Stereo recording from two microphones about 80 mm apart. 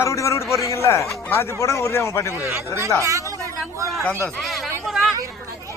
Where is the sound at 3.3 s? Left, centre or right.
Right.